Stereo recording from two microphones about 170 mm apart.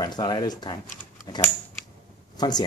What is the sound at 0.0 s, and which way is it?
Speech, 25° left (ahead or behind).